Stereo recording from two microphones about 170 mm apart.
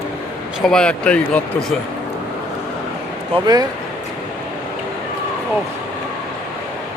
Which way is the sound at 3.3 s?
25° right (ahead or behind).